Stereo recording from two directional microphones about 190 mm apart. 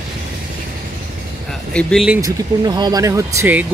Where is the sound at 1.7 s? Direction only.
5° left (ahead or behind).